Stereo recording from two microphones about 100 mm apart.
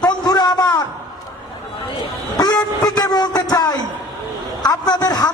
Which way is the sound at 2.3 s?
40° left (ahead or behind).